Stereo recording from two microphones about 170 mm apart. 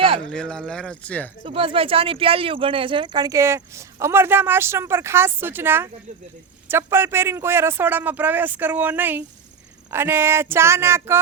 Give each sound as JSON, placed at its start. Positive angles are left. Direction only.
{"t": 0.2, "sound": "speech", "side_deg": 5}
{"t": 1.5, "sound": "speech", "side_deg": -30}